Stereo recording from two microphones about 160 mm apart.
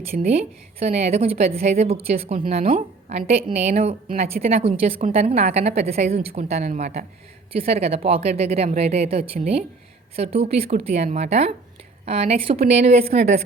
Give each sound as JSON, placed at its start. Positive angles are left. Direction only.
{"t": 0.3, "sound": "a woman's voice", "side_deg": -40}